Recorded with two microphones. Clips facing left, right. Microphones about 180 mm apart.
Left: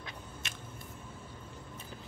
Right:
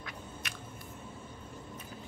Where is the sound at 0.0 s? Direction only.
25° left (ahead or behind).